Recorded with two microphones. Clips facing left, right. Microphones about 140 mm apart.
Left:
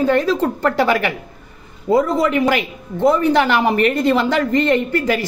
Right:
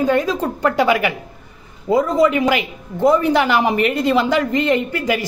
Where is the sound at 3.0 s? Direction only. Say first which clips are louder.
Even; 5° right (ahead or behind).